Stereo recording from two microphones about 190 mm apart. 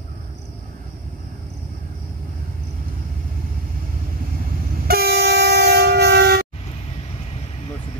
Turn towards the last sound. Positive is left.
turn(degrees=-60)  # may be behind; listen again after turning